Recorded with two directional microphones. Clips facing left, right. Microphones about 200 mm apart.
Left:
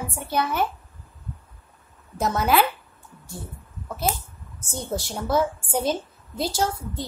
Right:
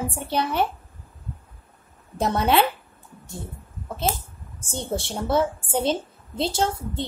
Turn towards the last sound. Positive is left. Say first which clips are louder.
# right 1 dB
turn(degrees=-25)  # may be behind; listen again after turning